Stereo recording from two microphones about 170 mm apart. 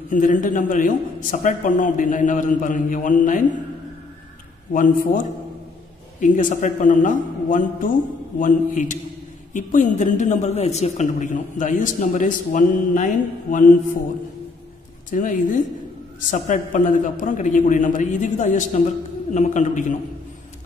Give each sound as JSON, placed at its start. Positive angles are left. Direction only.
{"t": 0.1, "sound": "a woman's voice", "side_deg": 50}
{"t": 4.7, "sound": "a woman's voice", "side_deg": 50}
{"t": 6.2, "sound": "a woman's voice", "side_deg": 50}
{"t": 15.0, "sound": "a woman's voice", "side_deg": 50}